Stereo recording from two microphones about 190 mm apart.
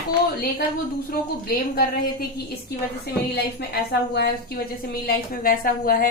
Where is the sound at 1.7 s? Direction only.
55° left (ahead or behind).